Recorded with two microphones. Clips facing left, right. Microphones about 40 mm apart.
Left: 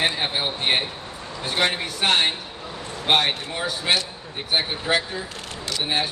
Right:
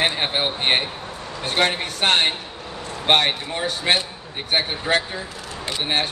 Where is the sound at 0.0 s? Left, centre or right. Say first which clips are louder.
Right 2 dB; right.